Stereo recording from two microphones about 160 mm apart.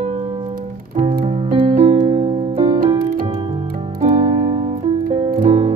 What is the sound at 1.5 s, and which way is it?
Music, 35° right (ahead or behind).